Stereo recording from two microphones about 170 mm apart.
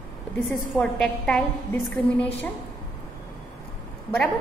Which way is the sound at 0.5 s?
5° left (ahead or behind).